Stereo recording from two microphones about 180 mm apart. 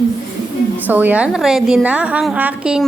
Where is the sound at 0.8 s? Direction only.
10° right (ahead or behind).